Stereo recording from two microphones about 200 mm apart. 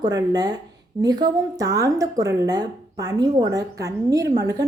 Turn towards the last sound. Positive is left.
turn(degrees=-20)  # may be behind; listen again after turning